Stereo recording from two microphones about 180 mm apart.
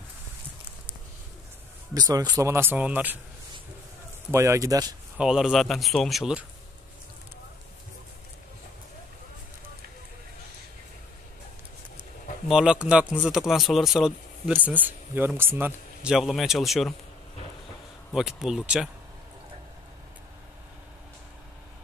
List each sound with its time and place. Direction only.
2.0 s speech: 20° right (ahead or behind)
4.3 s speech: 15° right (ahead or behind)
5.1 s speech: 5° right (ahead or behind)
12.4 s speech: 5° right (ahead or behind)
18.1 s speech: 5° right (ahead or behind)